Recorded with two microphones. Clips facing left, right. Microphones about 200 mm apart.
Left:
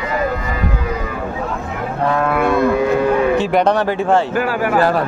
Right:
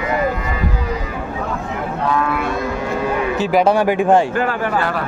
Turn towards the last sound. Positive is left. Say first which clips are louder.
# left 6 dB
turn(degrees=40)  # may be behind; listen again after turning